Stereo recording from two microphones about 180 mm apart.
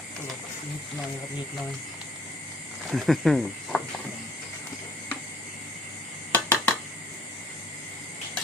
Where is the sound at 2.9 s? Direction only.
Centre (ahead or behind).